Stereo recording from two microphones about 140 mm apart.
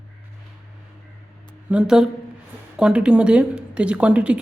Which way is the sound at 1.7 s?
5° right (ahead or behind).